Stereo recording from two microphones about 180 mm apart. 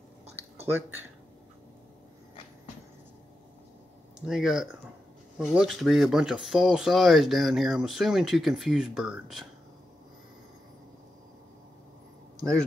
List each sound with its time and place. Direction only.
0.7 s speech: 10° right (ahead or behind)
4.3 s speech: 5° right (ahead or behind)